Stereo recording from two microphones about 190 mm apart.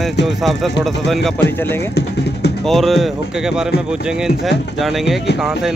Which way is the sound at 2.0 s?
60° left (ahead or behind).